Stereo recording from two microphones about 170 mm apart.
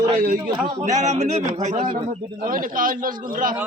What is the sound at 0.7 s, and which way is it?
A man's voice, 45° right (ahead or behind).